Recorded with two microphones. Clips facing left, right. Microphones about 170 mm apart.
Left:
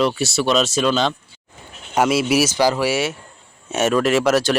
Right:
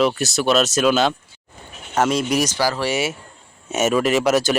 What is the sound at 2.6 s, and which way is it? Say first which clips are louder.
Speech: left 4 dB; 20° left (ahead or behind).